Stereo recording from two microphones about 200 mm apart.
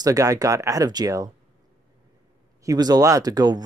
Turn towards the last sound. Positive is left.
turn(degrees=-20)  # may be behind; listen again after turning